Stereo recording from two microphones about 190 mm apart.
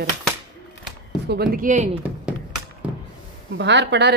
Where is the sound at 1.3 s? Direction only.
55° right (ahead or behind).